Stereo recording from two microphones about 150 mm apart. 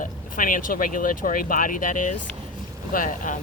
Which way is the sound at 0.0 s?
65° left (ahead or behind).